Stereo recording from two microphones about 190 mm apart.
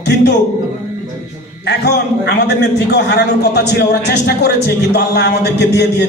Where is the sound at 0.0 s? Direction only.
65° left (ahead or behind).